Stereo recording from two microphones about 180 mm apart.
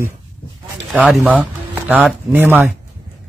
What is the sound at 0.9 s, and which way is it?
A man's voice, centre (ahead or behind).